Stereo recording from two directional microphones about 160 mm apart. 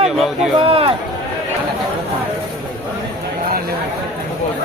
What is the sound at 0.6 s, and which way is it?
Speech, 35° right (ahead or behind).